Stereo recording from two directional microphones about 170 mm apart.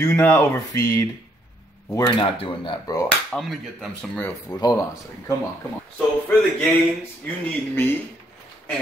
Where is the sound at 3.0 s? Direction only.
Centre (ahead or behind).